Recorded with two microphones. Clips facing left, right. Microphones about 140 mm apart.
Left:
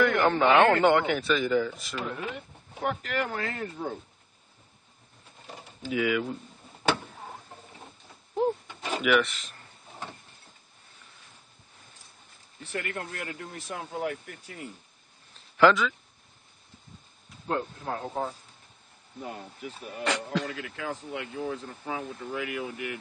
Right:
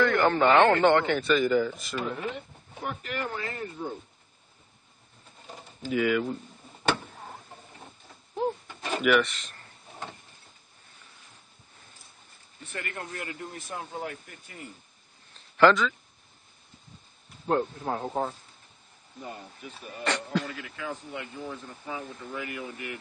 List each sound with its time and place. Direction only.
0.0 s a man's voice: 5° left (ahead or behind)
2.8 s speech: 75° left (ahead or behind)
5.5 s speech: centre (ahead or behind)
6.8 s a sound: 5° left (ahead or behind)
8.6 s a sound: centre (ahead or behind)
12.7 s speech: 60° left (ahead or behind)
15.5 s speech: 5° left (ahead or behind)
17.6 s speech: 20° right (ahead or behind)
20.0 s a man's voice: centre (ahead or behind)
20.7 s speech: 85° left
21.1 s a man's voice: 5° left (ahead or behind)
22.5 s a man's voice: 5° left (ahead or behind)